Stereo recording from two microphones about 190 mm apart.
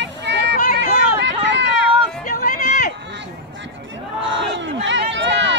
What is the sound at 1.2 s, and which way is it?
Run, 65° right (ahead or behind).